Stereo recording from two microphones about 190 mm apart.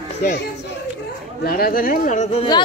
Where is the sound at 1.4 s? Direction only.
50° left (ahead or behind); by 2.6 s 30° left (ahead or behind).